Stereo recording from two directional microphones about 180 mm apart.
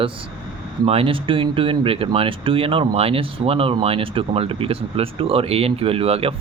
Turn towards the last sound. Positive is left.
turn(degrees=-35)  # may be behind; listen again after turning